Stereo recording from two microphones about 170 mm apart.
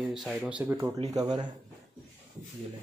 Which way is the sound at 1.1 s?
25° right (ahead or behind).